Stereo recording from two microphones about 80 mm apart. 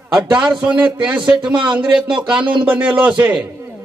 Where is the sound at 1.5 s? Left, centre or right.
Right.